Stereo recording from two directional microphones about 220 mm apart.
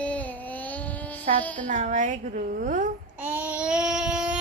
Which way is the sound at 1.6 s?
35° right (ahead or behind).